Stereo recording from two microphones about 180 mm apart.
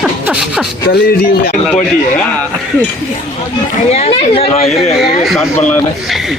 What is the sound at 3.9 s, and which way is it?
Speech, 35° left (ahead or behind).